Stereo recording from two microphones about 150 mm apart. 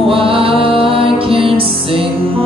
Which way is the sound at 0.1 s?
35° right (ahead or behind).